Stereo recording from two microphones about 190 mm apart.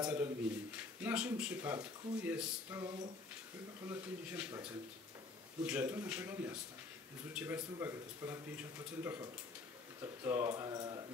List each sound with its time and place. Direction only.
0.0 s speech: 5° right (ahead or behind)
3.9 s speech: 10° right (ahead or behind)
5.7 s speech: 10° right (ahead or behind)